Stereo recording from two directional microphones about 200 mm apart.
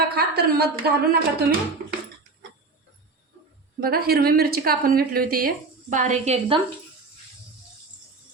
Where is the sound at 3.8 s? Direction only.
50° right (ahead or behind); by 6.5 s 35° right (ahead or behind).